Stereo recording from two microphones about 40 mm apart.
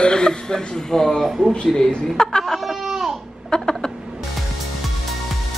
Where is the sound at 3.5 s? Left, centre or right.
Left.